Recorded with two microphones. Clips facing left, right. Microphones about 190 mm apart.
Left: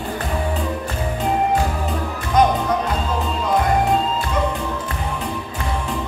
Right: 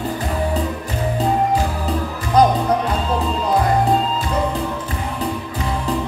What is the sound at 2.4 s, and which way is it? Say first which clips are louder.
Music: right 2 dB; 35° right (ahead or behind).